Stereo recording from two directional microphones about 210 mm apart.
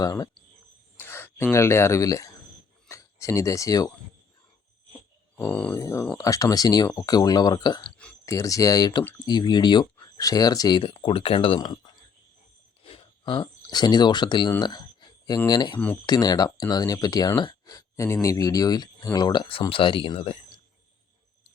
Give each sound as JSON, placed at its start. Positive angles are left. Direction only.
{"t": 0.0, "sound": "speech", "side_deg": 15}
{"t": 5.4, "sound": "speech", "side_deg": 5}
{"t": 12.8, "sound": "a sound", "side_deg": 25}
{"t": 15.3, "sound": "speech", "side_deg": 20}